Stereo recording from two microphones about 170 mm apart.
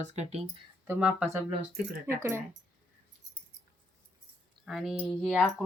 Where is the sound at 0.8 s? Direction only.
10° right (ahead or behind).